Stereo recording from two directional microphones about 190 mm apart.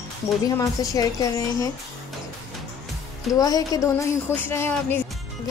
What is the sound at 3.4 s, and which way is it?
A woman's voice, 20° left (ahead or behind).